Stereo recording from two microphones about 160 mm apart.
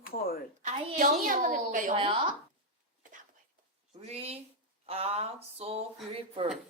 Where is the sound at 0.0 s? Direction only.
65° left (ahead or behind).